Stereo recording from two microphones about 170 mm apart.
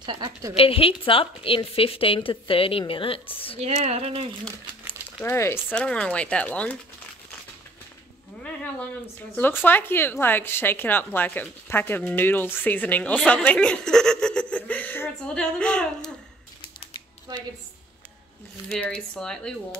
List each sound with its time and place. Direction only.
0.0 s a woman's voice: 30° right (ahead or behind)
0.6 s a woman's voice: 35° left (ahead or behind)
3.5 s speech: 40° right (ahead or behind)
5.2 s speech: 15° left (ahead or behind)
9.3 s speech: 10° left (ahead or behind)
18.7 s speech: 5° left (ahead or behind)